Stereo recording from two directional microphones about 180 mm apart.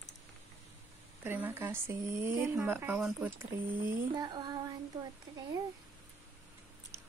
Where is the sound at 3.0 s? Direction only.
Centre (ahead or behind).